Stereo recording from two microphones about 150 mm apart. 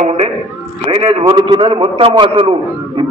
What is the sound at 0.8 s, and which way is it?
A man's voice, 40° right (ahead or behind).